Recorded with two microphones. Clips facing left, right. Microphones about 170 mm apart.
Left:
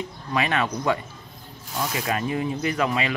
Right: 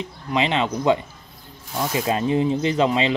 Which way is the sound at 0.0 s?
20° right (ahead or behind).